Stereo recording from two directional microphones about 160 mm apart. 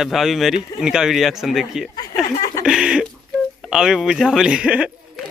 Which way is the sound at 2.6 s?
5° right (ahead or behind).